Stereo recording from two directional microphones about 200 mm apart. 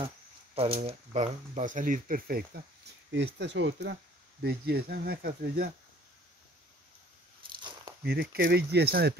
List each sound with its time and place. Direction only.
0.6 s speech: 30° right (ahead or behind); by 2.6 s 50° right (ahead or behind)
3.3 s speech: 60° right (ahead or behind)
7.4 s biting: 20° right (ahead or behind)
8.0 s speech: 50° right (ahead or behind)